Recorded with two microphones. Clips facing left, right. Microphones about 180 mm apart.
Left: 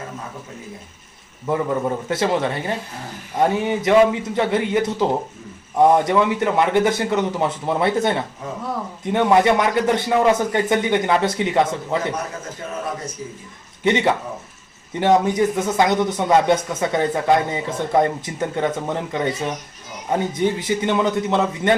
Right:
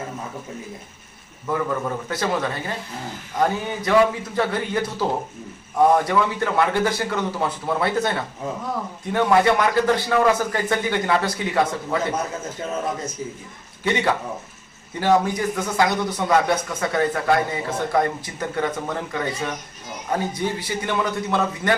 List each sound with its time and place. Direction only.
1.5 s speech: 25° left (ahead or behind)
6.1 s speech: 20° left (ahead or behind)
13.8 s speech: 20° left (ahead or behind)